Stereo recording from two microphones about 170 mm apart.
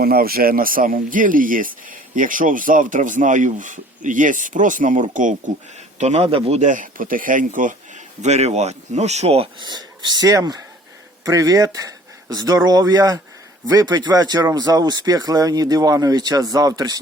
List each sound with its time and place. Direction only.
0.0 s a man's voice: 60° right (ahead or behind); by 17.0 s 20° right (ahead or behind)